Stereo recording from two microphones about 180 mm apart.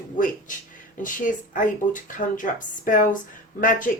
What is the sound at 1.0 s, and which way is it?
Speech, 45° left (ahead or behind).